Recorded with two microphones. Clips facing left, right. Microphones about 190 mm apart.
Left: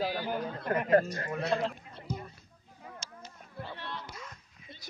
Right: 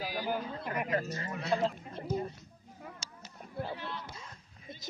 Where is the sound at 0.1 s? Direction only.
10° right (ahead or behind).